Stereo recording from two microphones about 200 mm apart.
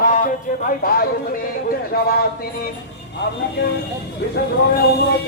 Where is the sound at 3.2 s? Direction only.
60° left (ahead or behind).